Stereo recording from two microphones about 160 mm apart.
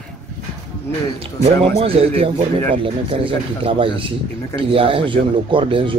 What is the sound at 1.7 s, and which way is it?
Speech, 35° right (ahead or behind).